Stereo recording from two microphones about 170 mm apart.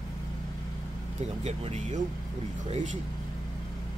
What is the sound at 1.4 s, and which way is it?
A man's voice, 40° right (ahead or behind).